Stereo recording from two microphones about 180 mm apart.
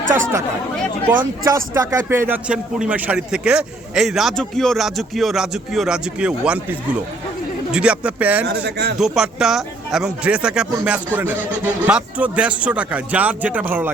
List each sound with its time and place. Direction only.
0.1 s speech: 15° right (ahead or behind)
1.5 s speech: 15° right (ahead or behind)
8.4 s speech: 70° right (ahead or behind)
9.0 s speech: centre (ahead or behind)